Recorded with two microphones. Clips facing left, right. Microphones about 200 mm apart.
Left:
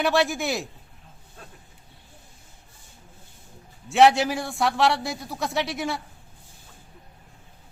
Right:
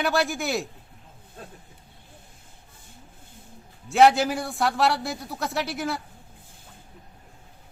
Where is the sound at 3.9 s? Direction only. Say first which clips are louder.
Even; centre (ahead or behind).